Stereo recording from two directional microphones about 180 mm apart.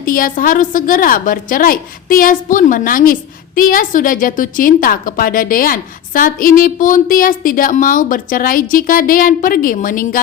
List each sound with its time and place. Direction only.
0.0 s a woman's voice: 50° left (ahead or behind)